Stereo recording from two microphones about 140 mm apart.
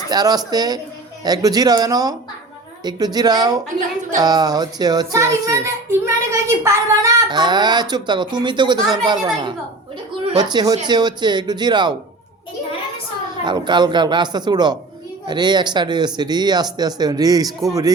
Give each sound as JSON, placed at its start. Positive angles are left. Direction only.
{"t": 0.1, "sound": "a child's voice", "side_deg": -30}
{"t": 7.3, "sound": "speech", "side_deg": -30}
{"t": 13.4, "sound": "speech", "side_deg": -35}